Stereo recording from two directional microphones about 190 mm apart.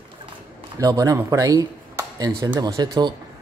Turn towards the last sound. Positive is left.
turn(degrees=-20)  # may be behind; listen again after turning